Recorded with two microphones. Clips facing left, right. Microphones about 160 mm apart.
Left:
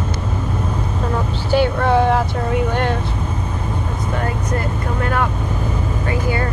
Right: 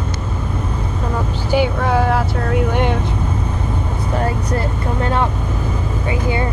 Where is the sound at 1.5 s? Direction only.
10° right (ahead or behind).